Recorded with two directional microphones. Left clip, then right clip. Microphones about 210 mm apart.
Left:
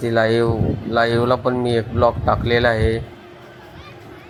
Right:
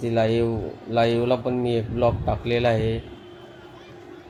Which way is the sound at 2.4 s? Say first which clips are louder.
Left 3 dB; 45° left (ahead or behind).